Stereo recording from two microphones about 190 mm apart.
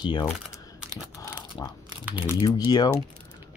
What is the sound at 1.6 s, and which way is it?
Speech, 25° left (ahead or behind).